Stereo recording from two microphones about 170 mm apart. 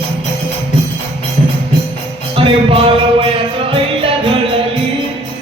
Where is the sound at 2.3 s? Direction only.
30° right (ahead or behind).